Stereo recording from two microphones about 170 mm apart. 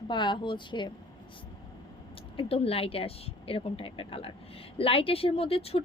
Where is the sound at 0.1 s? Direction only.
25° left (ahead or behind).